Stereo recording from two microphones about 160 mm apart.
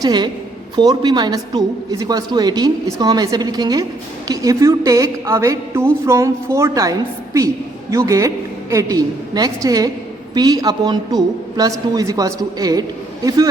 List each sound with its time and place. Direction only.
0.0 s a woman's voice: 25° right (ahead or behind)